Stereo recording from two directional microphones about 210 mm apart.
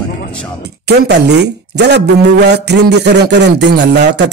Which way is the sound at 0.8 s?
55° right (ahead or behind).